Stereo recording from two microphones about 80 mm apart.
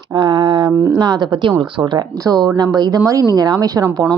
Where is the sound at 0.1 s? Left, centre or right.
Right.